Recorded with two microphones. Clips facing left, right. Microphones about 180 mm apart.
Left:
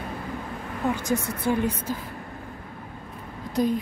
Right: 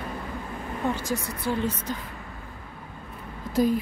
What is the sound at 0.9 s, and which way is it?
A woman's voice, 20° left (ahead or behind).